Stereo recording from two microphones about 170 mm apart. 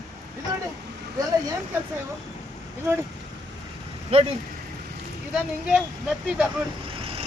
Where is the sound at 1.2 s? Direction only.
20° right (ahead or behind).